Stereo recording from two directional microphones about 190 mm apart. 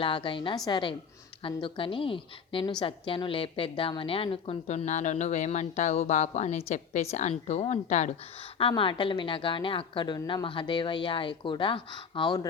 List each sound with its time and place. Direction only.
0.0 s a woman's voice: 25° left (ahead or behind)
8.5 s a woman's voice: 25° left (ahead or behind)